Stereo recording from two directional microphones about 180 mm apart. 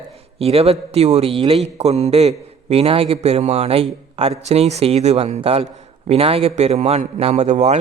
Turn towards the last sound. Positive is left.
turn(degrees=-40)  # may be behind; listen again after turning